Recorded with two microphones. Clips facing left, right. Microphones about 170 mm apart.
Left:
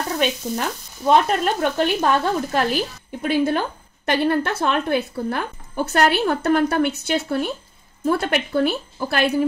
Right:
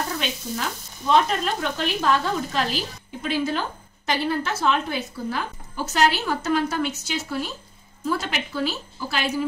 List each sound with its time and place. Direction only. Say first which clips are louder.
0.2 s frying: left 6 dB; 50° left (ahead or behind)